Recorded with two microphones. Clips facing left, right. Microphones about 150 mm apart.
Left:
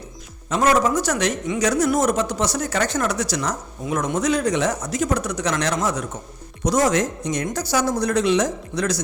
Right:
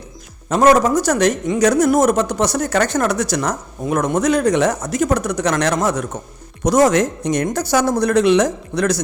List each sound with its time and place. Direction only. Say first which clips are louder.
0.5 s speech: right 5 dB; 45° right (ahead or behind)